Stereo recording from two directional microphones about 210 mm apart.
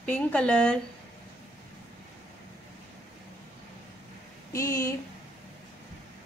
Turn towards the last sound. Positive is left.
turn(degrees=15)  # may be behind; listen again after turning